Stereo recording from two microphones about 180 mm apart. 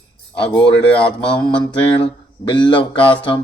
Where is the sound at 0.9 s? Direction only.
25° left (ahead or behind).